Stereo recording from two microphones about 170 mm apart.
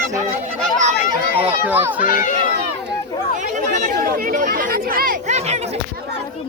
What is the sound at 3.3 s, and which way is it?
Speech, 50° right (ahead or behind).